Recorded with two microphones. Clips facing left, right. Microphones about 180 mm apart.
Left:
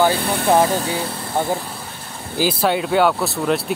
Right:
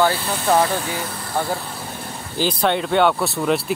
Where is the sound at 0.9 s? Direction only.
25° left (ahead or behind).